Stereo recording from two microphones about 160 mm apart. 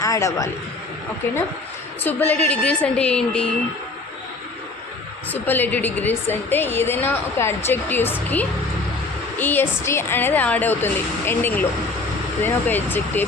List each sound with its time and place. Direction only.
0.0 s a man's voice: 20° left (ahead or behind)
2.0 s a woman's voice: 10° left (ahead or behind)
5.3 s a woman's voice: 10° left (ahead or behind)